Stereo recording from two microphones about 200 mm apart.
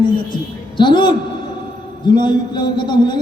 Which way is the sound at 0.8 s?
25° left (ahead or behind).